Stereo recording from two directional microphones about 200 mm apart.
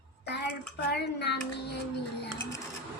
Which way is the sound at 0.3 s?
55° left (ahead or behind).